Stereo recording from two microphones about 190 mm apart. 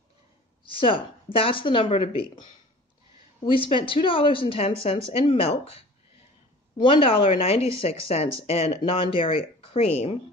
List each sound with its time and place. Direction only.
0.7 s a woman's voice: 25° left (ahead or behind)
3.4 s a woman's voice: 25° left (ahead or behind)
6.8 s a woman's voice: 30° left (ahead or behind)